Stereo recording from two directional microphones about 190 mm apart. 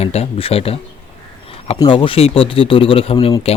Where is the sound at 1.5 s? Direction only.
30° left (ahead or behind).